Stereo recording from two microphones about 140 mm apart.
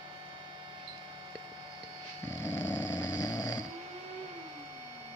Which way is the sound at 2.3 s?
20° left (ahead or behind).